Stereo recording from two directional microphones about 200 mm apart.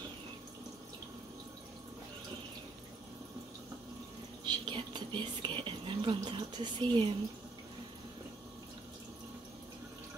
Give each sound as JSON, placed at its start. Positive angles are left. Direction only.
{"t": 4.5, "sound": "speech", "side_deg": -25}